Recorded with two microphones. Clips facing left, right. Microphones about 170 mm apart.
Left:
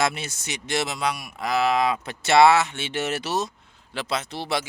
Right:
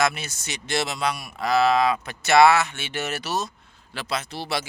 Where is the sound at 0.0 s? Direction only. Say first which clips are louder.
Right 1 dB; 25° left (ahead or behind).